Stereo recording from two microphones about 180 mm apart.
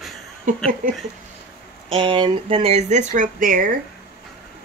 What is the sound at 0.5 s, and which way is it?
Speech, 45° right (ahead or behind).